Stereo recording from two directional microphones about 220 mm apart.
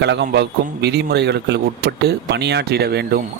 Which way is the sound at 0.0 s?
50° right (ahead or behind).